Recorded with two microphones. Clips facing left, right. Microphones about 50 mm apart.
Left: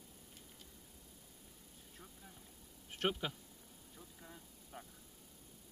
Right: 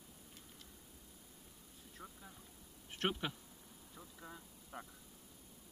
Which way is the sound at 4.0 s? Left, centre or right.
Right.